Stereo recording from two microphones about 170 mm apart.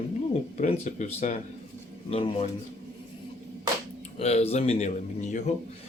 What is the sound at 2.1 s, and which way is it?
Speech, 35° left (ahead or behind).